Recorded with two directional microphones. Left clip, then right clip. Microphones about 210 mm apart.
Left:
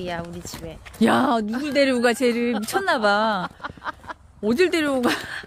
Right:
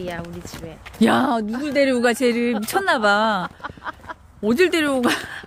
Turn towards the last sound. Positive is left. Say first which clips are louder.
# right 2 dB
turn(degrees=0)  # may be behind; listen again after turning